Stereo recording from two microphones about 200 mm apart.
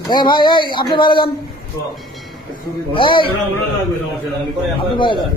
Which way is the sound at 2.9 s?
25° left (ahead or behind).